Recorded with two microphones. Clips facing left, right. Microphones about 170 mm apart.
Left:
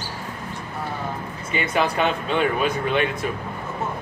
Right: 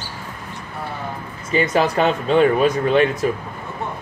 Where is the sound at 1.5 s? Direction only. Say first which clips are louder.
Right 5 dB; 35° right (ahead or behind).